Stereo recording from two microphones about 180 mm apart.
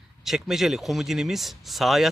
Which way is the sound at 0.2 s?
Centre (ahead or behind).